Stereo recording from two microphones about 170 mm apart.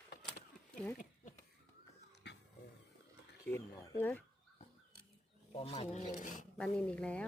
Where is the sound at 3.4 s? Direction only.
15° left (ahead or behind).